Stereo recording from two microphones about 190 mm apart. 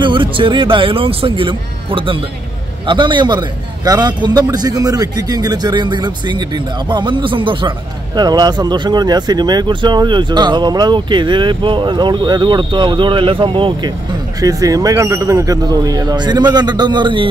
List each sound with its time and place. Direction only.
0.0 s speech: 25° right (ahead or behind)